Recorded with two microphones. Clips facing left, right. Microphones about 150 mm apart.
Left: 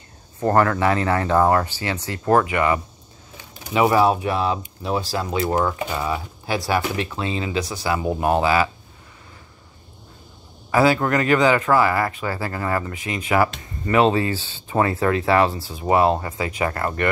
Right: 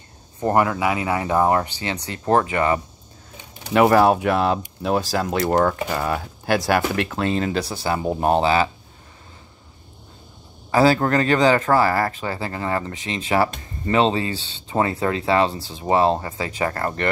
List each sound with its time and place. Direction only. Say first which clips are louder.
0.4 s speech: left 1 dB; 15° right (ahead or behind); by 2.8 s 35° right (ahead or behind)
3.6 s speech: right 2 dB; 60° right (ahead or behind)
7.6 s speech: even; 30° right (ahead or behind)
10.7 s speech: right 1 dB; 35° right (ahead or behind)